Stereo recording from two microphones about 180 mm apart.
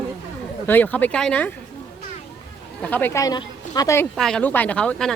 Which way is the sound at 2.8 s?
10° left (ahead or behind).